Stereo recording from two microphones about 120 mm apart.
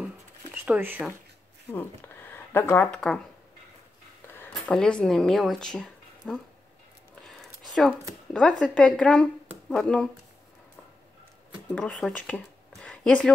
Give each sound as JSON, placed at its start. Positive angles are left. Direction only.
{"t": 0.7, "sound": "speech", "side_deg": -15}
{"t": 2.3, "sound": "speech", "side_deg": 15}
{"t": 4.4, "sound": "speech", "side_deg": 10}
{"t": 7.2, "sound": "a sound", "side_deg": 0}
{"t": 8.3, "sound": "a woman's voice", "side_deg": 5}
{"t": 11.7, "sound": "speech", "side_deg": 5}